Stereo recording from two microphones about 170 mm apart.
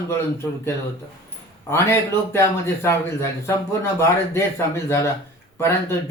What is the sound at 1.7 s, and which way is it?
Speech, 15° left (ahead or behind).